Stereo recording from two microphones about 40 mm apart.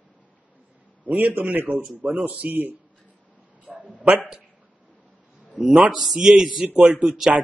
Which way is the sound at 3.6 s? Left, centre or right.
Right.